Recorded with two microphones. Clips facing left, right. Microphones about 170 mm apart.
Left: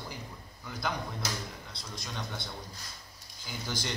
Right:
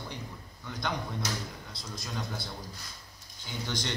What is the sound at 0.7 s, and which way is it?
A man's voice, 5° left (ahead or behind).